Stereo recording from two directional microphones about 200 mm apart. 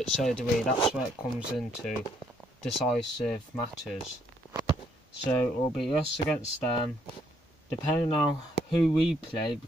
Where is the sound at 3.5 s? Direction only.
Centre (ahead or behind).